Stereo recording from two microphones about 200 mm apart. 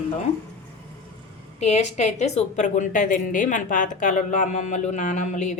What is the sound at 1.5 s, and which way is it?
A woman's voice, 35° left (ahead or behind).